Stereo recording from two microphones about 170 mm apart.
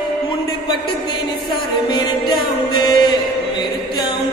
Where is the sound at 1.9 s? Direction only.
25° left (ahead or behind).